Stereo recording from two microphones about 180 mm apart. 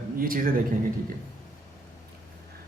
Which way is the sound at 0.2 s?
55° right (ahead or behind).